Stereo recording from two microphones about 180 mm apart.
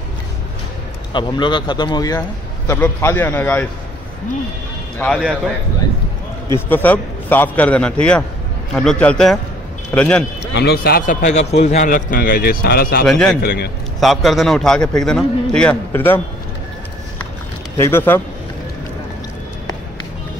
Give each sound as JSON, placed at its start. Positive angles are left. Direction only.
{"t": 1.1, "sound": "a man's voice", "side_deg": 25}
{"t": 4.9, "sound": "speech", "side_deg": 5}
{"t": 6.7, "sound": "a man's voice", "side_deg": 10}
{"t": 10.5, "sound": "a man's voice", "side_deg": 65}
{"t": 13.0, "sound": "a man's voice", "side_deg": 5}
{"t": 13.4, "sound": "a man's voice", "side_deg": 55}
{"t": 13.9, "sound": "a man's voice", "side_deg": 0}
{"t": 17.7, "sound": "a man's voice", "side_deg": 15}